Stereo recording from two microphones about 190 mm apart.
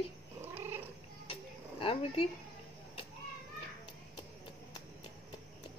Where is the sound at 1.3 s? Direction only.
30° left (ahead or behind).